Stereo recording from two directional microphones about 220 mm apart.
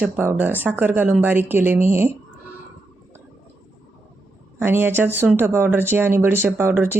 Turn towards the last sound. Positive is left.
turn(degrees=-10)  # may be behind; listen again after turning